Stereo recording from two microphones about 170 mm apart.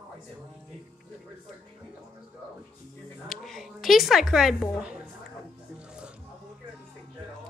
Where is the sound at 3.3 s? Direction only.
Centre (ahead or behind).